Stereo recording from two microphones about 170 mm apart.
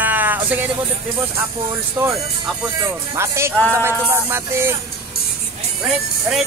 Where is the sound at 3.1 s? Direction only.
15° right (ahead or behind).